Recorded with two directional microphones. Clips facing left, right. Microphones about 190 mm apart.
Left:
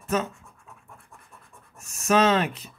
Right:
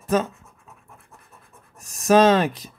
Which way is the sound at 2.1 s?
40° right (ahead or behind).